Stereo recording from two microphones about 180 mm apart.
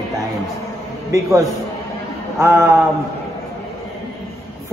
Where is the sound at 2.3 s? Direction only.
15° right (ahead or behind).